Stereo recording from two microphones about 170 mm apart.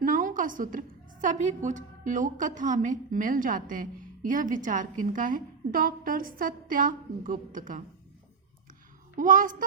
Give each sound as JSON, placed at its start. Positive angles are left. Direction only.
{"t": 0.0, "sound": "a woman's voice", "side_deg": -50}
{"t": 9.1, "sound": "a woman's voice", "side_deg": -50}